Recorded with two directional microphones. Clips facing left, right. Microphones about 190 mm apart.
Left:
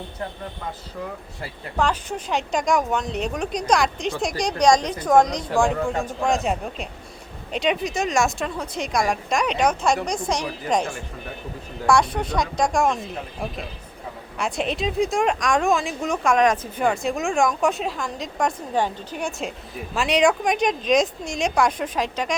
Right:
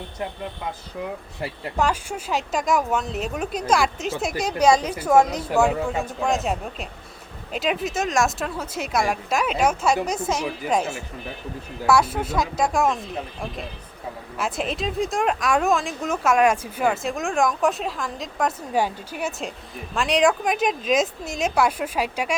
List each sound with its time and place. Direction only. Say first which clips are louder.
1.7 s speech: left 1 dB; 10° right (ahead or behind)
14.3 s speech: left 2 dB; centre (ahead or behind)